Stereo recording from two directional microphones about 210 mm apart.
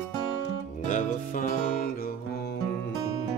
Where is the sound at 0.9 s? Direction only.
40° left (ahead or behind).